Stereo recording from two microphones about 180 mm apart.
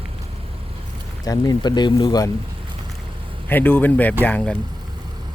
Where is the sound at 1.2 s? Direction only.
20° left (ahead or behind).